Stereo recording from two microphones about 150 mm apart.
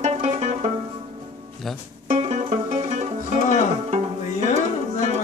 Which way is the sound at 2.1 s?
50° right (ahead or behind).